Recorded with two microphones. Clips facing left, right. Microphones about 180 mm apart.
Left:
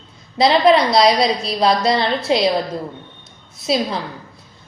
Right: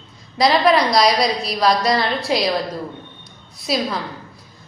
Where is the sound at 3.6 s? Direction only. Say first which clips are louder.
Left 2 dB; 25° left (ahead or behind).